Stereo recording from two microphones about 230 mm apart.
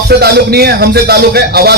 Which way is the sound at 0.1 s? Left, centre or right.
Right.